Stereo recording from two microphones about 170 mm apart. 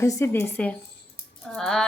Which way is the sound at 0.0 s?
20° left (ahead or behind).